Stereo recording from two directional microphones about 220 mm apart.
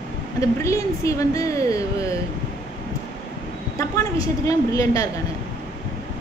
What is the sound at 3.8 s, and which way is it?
A woman's voice, 15° left (ahead or behind).